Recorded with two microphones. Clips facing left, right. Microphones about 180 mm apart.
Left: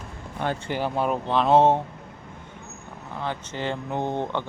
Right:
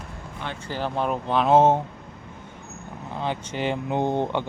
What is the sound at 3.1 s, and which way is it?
Speech, 20° right (ahead or behind).